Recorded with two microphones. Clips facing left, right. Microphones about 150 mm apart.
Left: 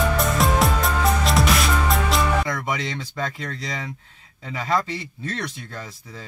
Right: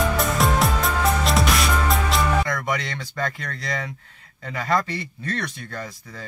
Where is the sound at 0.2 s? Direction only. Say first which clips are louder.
Left 1 dB; centre (ahead or behind).